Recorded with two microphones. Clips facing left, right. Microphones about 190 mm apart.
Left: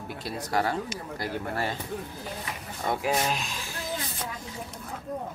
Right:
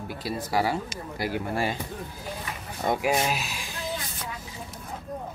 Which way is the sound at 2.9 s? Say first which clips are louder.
Right 2 dB; 15° right (ahead or behind).